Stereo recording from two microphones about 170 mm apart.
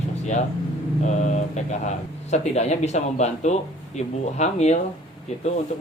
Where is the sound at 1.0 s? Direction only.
45° left (ahead or behind).